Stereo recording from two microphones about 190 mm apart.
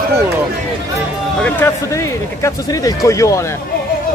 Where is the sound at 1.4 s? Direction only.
10° left (ahead or behind).